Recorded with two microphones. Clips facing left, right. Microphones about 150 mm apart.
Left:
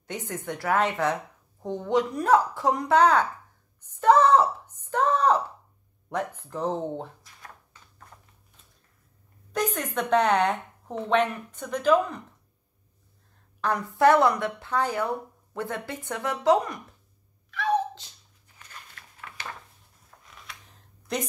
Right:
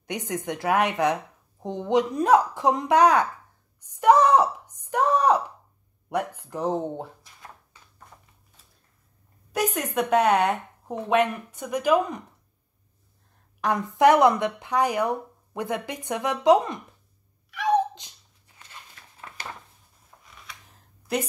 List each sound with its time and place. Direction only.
0.0 s speech: 15° right (ahead or behind)
4.0 s a sound: 15° right (ahead or behind)
6.0 s speech: 10° right (ahead or behind)
9.5 s speech: 10° right (ahead or behind)
13.6 s speech: 15° right (ahead or behind)
17.5 s cat: 15° right (ahead or behind)
20.1 s a sound: 20° right (ahead or behind)